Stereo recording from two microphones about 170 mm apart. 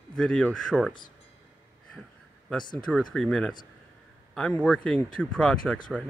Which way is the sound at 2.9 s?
5° left (ahead or behind).